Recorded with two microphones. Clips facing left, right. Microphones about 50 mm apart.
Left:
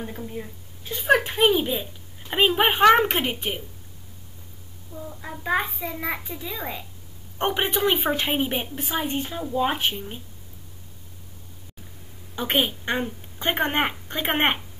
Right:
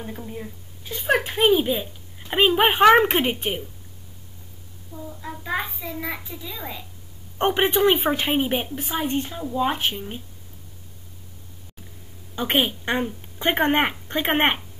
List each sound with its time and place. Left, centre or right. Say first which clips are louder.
0.0 s a child's voice: even; centre
5.2 s a child's voice: left 3 dB; centre
7.4 s speech: right 4 dB; centre
9.3 s a child's voice: even; centre
9.9 s speech: right 2 dB; centre
12.4 s speech: right 2 dB; centre